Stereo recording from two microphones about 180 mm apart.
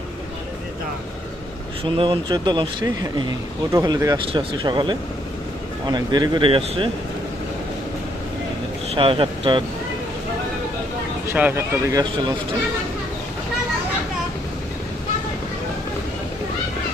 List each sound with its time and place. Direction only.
1.8 s speech: 30° right (ahead or behind)
9.0 s speech: 30° right (ahead or behind)
11.3 s speech: 10° right (ahead or behind)